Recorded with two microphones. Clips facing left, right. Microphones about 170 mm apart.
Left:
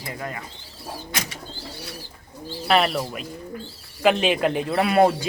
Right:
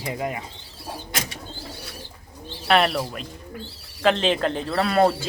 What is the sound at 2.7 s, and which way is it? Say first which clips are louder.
Speech: right 1 dB; centre (ahead or behind).